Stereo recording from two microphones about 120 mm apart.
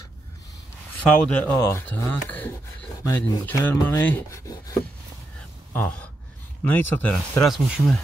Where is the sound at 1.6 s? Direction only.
20° left (ahead or behind).